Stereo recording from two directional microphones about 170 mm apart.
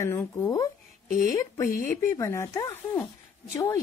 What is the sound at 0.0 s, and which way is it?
A woman's voice, 15° left (ahead or behind).